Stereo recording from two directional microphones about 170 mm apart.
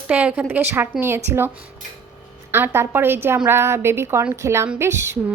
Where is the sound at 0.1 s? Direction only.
10° right (ahead or behind).